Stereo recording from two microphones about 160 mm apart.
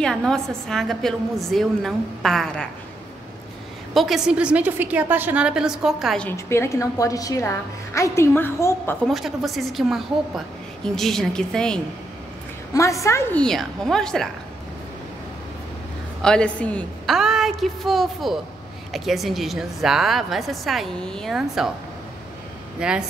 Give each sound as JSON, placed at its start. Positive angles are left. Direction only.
{"t": 0.0, "sound": "a woman's voice", "side_deg": 5}
{"t": 3.9, "sound": "a woman's voice", "side_deg": 0}
{"t": 6.2, "sound": "a woman's voice", "side_deg": 15}
{"t": 9.0, "sound": "a woman's voice", "side_deg": 0}
{"t": 12.7, "sound": "a woman's voice", "side_deg": 20}
{"t": 13.4, "sound": "a woman's voice", "side_deg": 5}
{"t": 16.2, "sound": "a woman's voice", "side_deg": 5}
{"t": 22.8, "sound": "a woman's voice", "side_deg": -5}